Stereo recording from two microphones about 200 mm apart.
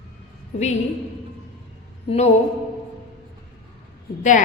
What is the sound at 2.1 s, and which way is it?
Speech, 35° left (ahead or behind).